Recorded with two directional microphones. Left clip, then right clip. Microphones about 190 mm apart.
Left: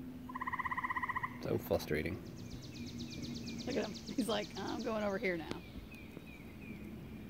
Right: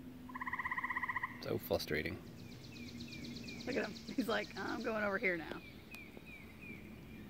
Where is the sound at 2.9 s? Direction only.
Centre (ahead or behind).